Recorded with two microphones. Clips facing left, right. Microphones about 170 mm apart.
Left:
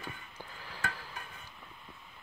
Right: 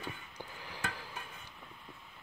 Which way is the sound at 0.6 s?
15° right (ahead or behind).